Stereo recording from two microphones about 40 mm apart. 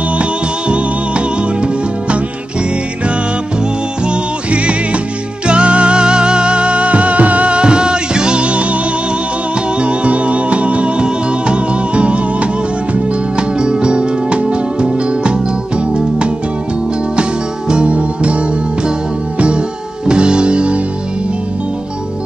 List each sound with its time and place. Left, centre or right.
0.2 s music: right
4.0 s music: right
17.1 s music: right